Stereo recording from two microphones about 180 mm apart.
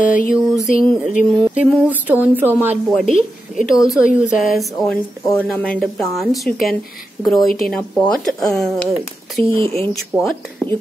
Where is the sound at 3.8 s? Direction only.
Centre (ahead or behind).